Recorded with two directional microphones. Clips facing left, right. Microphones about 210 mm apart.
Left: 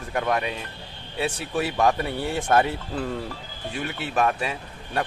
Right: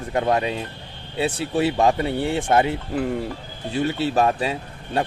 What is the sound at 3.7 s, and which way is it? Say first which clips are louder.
Speech: right 7 dB; 30° right (ahead or behind).